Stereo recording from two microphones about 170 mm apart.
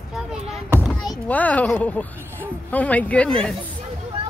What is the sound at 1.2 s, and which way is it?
Speech, 10° left (ahead or behind).